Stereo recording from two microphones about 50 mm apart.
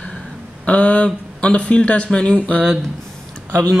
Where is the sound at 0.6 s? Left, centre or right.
Left.